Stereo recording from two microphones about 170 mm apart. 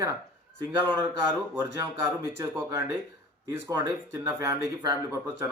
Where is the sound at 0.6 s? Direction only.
25° right (ahead or behind).